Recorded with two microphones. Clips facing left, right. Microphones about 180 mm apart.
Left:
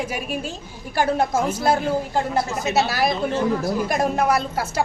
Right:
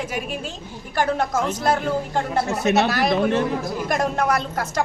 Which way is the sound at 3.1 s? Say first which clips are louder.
Right 4 dB; 70° right (ahead or behind).